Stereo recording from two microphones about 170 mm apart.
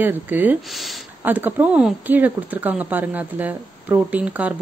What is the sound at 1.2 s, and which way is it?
A woman's voice, 10° right (ahead or behind).